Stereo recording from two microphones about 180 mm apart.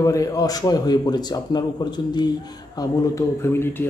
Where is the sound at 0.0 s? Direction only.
20° left (ahead or behind).